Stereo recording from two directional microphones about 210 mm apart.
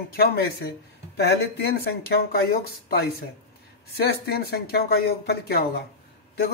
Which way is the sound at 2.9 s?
45° left (ahead or behind).